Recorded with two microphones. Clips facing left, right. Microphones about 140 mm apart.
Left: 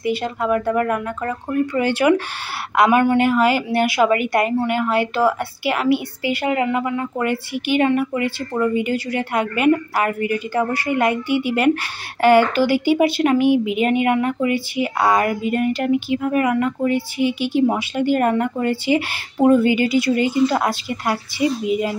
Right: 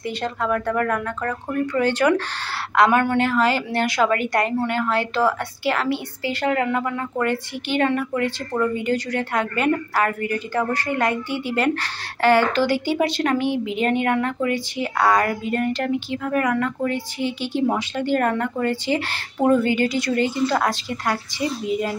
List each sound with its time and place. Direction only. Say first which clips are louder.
0.0 s a woman's voice: left 4 dB; 10° left (ahead or behind)